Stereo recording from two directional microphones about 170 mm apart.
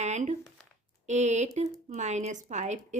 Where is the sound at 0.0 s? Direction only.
45° right (ahead or behind).